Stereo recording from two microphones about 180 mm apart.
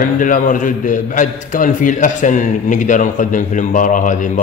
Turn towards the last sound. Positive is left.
turn(degrees=45)  # may be behind; listen again after turning